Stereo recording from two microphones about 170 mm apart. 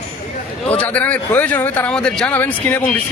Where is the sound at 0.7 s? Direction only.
10° left (ahead or behind).